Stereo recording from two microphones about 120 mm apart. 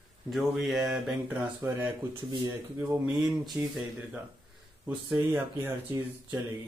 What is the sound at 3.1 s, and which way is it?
Speech, centre (ahead or behind).